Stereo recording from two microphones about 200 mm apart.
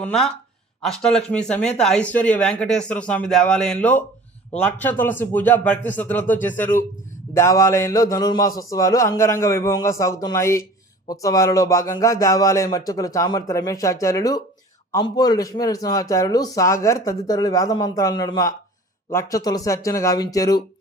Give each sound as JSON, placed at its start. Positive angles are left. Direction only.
{"t": 0.0, "sound": "speech", "side_deg": 5}